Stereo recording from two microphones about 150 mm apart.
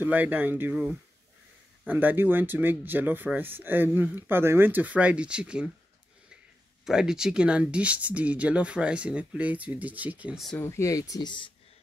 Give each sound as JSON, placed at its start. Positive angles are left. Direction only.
{"t": 0.0, "sound": "speech", "side_deg": -10}
{"t": 6.8, "sound": "speech", "side_deg": -5}
{"t": 10.6, "sound": "speech", "side_deg": 20}